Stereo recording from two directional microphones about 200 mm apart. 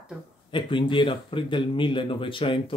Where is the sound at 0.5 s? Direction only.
25° left (ahead or behind).